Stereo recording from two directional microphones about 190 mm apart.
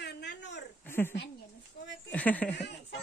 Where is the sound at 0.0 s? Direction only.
65° left (ahead or behind).